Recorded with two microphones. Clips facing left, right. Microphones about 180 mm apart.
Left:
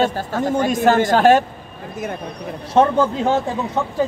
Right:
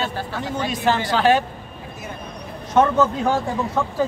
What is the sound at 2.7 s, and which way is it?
Speech, 30° left (ahead or behind).